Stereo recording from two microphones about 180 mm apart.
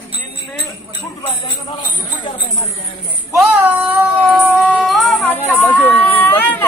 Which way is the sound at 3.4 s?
5° right (ahead or behind).